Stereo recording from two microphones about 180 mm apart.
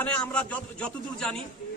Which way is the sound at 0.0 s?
5° left (ahead or behind).